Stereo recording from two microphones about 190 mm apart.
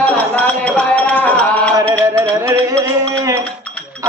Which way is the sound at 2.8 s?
15° right (ahead or behind).